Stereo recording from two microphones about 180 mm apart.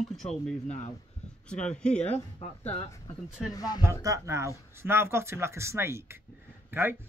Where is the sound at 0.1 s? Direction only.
Centre (ahead or behind).